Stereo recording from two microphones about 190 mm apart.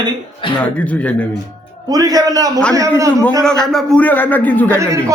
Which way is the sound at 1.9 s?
20° right (ahead or behind).